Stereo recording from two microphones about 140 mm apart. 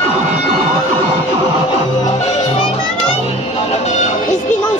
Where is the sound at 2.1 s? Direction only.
50° left (ahead or behind).